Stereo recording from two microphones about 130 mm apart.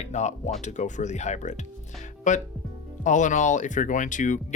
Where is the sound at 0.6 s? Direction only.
65° left (ahead or behind).